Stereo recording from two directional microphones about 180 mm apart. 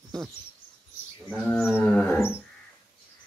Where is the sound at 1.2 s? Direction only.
5° left (ahead or behind).